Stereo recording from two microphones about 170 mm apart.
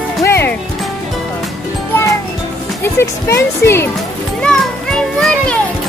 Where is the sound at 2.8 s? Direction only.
15° left (ahead or behind).